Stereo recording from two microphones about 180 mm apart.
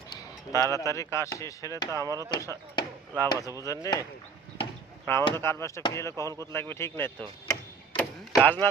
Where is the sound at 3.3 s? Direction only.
15° right (ahead or behind).